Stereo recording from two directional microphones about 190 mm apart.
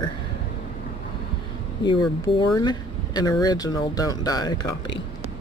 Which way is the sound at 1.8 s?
20° left (ahead or behind).